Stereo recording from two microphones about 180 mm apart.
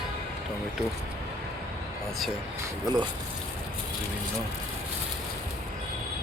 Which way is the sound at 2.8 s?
25° right (ahead or behind).